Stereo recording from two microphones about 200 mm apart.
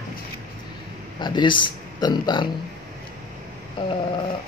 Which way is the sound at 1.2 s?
25° left (ahead or behind).